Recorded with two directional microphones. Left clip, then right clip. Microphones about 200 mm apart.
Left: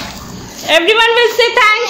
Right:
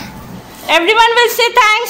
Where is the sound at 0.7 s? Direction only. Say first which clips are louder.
Even; 5° right (ahead or behind).